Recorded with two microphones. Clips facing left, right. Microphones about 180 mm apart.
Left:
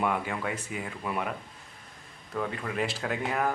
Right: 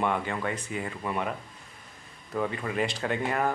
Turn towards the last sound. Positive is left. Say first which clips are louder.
# right 2 dB
turn(degrees=0)  # may be behind; listen again after turning